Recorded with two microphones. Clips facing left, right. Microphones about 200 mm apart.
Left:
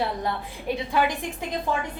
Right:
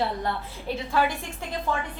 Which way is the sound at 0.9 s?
15° left (ahead or behind).